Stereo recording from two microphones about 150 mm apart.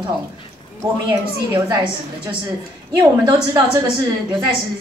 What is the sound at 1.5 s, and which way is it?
A woman's voice, 30° right (ahead or behind).